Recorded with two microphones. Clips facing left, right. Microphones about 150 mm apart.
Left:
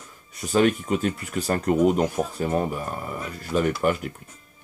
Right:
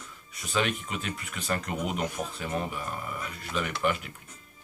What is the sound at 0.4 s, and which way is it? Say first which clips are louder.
Speech: left 9 dB; 45° left (ahead or behind).